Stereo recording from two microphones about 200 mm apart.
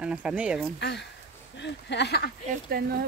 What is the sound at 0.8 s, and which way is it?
Speech, 55° left (ahead or behind).